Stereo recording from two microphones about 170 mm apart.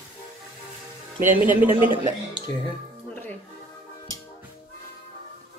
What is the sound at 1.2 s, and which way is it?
Speech, 10° right (ahead or behind).